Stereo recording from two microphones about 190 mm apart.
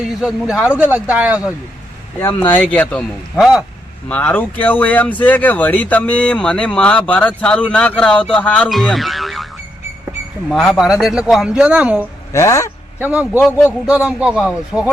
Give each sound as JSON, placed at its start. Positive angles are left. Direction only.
{"t": 0.0, "sound": "speech", "side_deg": -5}
{"t": 2.2, "sound": "speech", "side_deg": 10}
{"t": 4.1, "sound": "speech", "side_deg": 10}
{"t": 10.5, "sound": "speech", "side_deg": 0}
{"t": 12.3, "sound": "speech", "side_deg": 15}
{"t": 13.0, "sound": "speech", "side_deg": -5}
{"t": 13.4, "sound": "speech", "side_deg": 10}
{"t": 13.9, "sound": "speech", "side_deg": -5}